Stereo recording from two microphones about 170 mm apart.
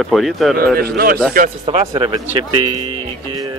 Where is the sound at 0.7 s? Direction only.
65° right (ahead or behind).